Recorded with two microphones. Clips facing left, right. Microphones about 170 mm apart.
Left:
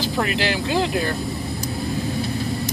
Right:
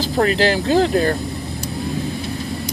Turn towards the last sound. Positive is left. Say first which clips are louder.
# right 6 dB
turn(degrees=-40)  # may be behind; listen again after turning